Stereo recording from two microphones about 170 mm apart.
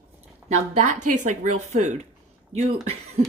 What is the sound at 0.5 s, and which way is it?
A woman's voice, 45° right (ahead or behind).